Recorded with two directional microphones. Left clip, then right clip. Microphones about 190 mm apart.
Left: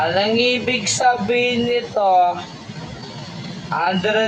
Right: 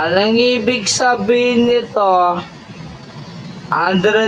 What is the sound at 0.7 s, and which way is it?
Speech, 35° right (ahead or behind).